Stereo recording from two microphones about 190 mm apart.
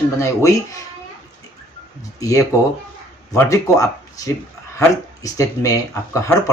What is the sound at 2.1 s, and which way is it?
Speech, 20° left (ahead or behind).